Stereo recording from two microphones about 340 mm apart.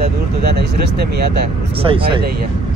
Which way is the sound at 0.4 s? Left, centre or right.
Right.